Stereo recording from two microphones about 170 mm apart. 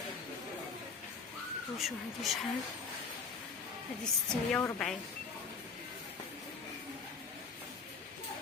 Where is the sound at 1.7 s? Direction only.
Centre (ahead or behind).